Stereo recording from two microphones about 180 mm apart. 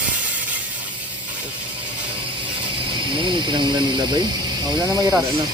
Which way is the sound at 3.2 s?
25° right (ahead or behind).